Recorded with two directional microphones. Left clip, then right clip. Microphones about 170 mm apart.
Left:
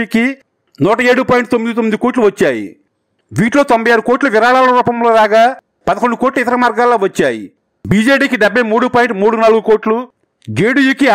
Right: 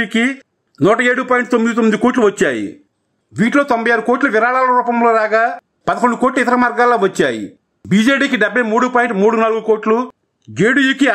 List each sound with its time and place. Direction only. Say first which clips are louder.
0.0 s a man's voice: left 1 dB; 35° left (ahead or behind)